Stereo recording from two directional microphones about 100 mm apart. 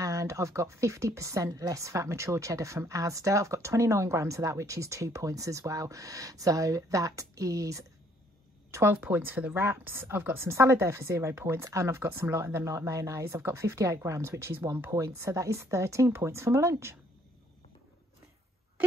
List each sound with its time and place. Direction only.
0.0 s speech: 35° right (ahead or behind)
8.9 s speech: 20° right (ahead or behind)